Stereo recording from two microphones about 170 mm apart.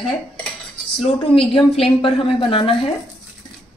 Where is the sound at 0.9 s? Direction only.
35° left (ahead or behind).